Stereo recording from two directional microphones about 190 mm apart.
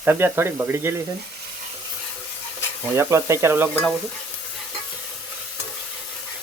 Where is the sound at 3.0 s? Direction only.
15° right (ahead or behind).